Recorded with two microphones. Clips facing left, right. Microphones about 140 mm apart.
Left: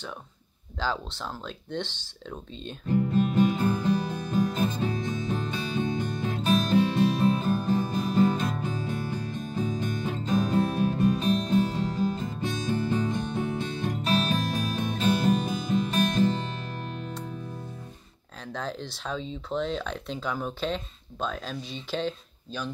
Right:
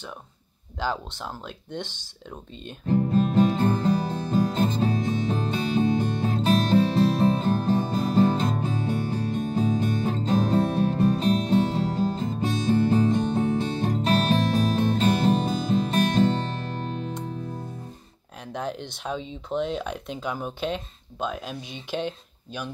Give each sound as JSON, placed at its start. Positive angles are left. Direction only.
{"t": 0.7, "sound": "speech", "side_deg": -15}
{"t": 2.9, "sound": "music", "side_deg": -35}
{"t": 18.4, "sound": "speech", "side_deg": -15}